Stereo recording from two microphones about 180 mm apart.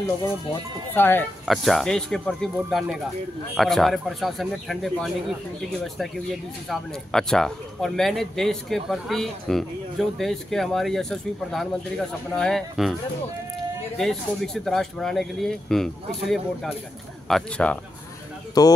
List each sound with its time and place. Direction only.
0.9 s speech: 10° left (ahead or behind)
1.5 s speech: centre (ahead or behind)
6.7 s speech: 5° left (ahead or behind)
13.9 s speech: centre (ahead or behind)
18.6 s speech: 20° left (ahead or behind)